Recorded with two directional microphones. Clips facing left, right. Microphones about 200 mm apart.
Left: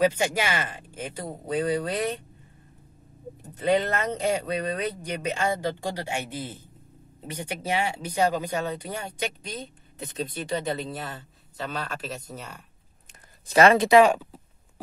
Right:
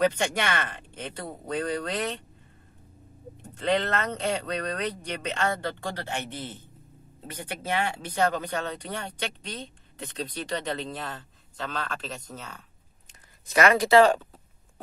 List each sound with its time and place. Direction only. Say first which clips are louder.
0.0 s speech: left 2 dB; 5° left (ahead or behind)
3.5 s speech: left 2 dB; 10° left (ahead or behind)
13.5 s speech: left 4 dB; 30° left (ahead or behind)
13.8 s speech: left 1 dB; 15° left (ahead or behind)